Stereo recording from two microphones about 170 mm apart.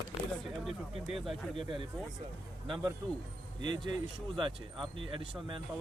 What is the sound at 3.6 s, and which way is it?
Speech, 25° right (ahead or behind).